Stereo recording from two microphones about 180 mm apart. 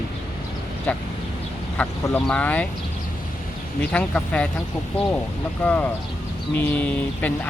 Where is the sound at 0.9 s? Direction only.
10° left (ahead or behind).